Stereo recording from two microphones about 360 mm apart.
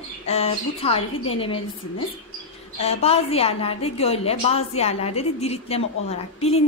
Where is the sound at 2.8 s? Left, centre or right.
Centre.